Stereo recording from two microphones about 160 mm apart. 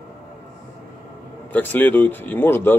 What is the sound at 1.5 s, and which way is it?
Speech, 10° left (ahead or behind).